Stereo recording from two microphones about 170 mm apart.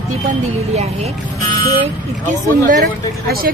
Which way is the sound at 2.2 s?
45° right (ahead or behind).